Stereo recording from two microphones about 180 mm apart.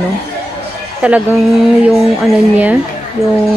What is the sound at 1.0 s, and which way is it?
Speech, 10° right (ahead or behind).